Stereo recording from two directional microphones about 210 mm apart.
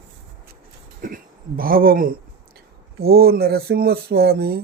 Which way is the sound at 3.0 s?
45° right (ahead or behind).